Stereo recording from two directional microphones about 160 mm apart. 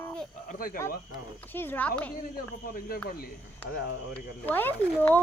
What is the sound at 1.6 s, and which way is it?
Speech, 10° left (ahead or behind).